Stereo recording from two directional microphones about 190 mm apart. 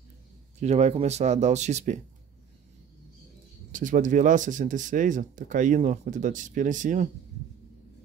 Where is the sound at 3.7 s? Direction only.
45° right (ahead or behind).